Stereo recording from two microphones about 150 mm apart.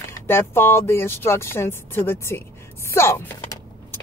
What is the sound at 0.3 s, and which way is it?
Speech, 15° left (ahead or behind).